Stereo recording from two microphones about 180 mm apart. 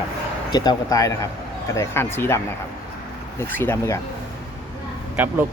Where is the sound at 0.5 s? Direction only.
20° left (ahead or behind).